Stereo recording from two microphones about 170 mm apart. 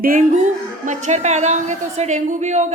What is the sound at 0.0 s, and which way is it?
A woman's voice, 50° right (ahead or behind).